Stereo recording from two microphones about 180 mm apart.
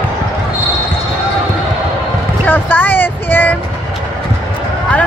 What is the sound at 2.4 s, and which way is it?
Vehicle, 10° left (ahead or behind).